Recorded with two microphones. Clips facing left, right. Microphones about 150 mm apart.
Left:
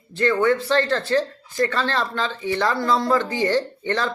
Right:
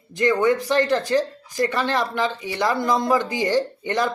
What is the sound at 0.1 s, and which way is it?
Speech, 15° right (ahead or behind).